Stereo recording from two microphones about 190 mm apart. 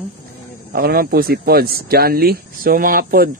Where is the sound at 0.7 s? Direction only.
50° right (ahead or behind).